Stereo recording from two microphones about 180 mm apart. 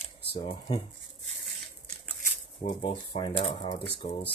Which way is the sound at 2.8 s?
30° left (ahead or behind).